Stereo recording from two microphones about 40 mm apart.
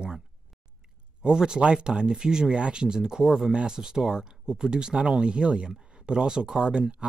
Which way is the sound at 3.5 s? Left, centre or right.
Centre.